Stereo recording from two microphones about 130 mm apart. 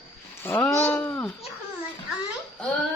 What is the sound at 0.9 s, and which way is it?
Babbling, 15° left (ahead or behind).